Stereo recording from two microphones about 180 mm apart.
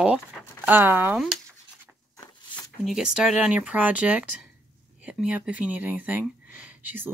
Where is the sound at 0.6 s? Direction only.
10° right (ahead or behind).